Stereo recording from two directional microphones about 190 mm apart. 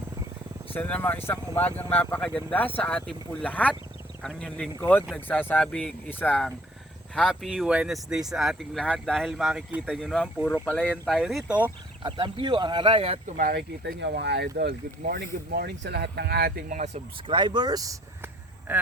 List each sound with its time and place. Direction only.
0.7 s speech: 10° left (ahead or behind); by 11.7 s 10° right (ahead or behind)
12.0 s speech: 25° right (ahead or behind)
13.3 s speech: 55° right (ahead or behind); by 17.3 s 35° right (ahead or behind)
17.3 s speech: 25° right (ahead or behind)